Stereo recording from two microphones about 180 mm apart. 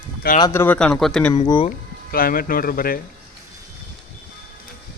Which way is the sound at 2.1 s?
55° left (ahead or behind).